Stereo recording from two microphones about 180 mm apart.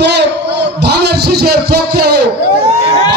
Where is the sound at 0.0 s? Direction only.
70° right (ahead or behind).